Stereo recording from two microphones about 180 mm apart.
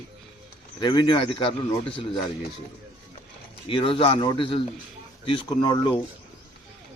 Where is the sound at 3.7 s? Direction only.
30° left (ahead or behind).